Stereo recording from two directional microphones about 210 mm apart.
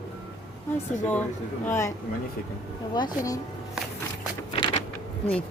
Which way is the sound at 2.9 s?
20° left (ahead or behind).